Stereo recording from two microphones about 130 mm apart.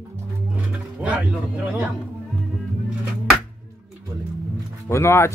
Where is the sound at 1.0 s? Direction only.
10° right (ahead or behind).